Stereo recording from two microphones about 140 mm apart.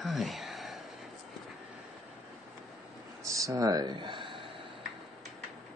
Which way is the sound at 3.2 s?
20° right (ahead or behind).